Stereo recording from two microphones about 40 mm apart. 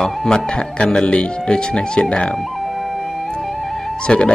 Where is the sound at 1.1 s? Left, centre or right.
Left.